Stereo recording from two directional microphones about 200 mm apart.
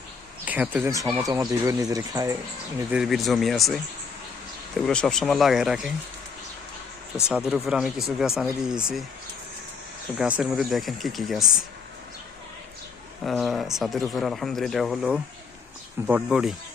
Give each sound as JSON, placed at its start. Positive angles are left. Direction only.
{"t": 0.4, "sound": "speech", "side_deg": -10}
{"t": 2.9, "sound": "speech", "side_deg": 0}
{"t": 4.9, "sound": "speech", "side_deg": 5}
{"t": 7.3, "sound": "speech", "side_deg": -5}
{"t": 10.2, "sound": "speech", "side_deg": -5}
{"t": 13.2, "sound": "speech", "side_deg": 0}